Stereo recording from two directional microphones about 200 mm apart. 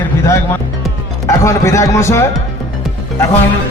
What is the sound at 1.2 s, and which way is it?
Speech, 15° left (ahead or behind).